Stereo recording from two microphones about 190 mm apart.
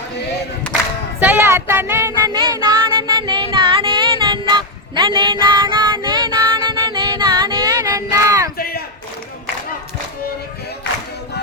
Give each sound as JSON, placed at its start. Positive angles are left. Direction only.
{"t": 1.2, "sound": "child singing", "side_deg": -10}
{"t": 8.1, "sound": "battle cry", "side_deg": -15}
{"t": 8.5, "sound": "a sound", "side_deg": 55}